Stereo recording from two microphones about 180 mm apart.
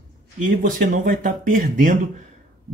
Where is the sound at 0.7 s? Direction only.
50° right (ahead or behind).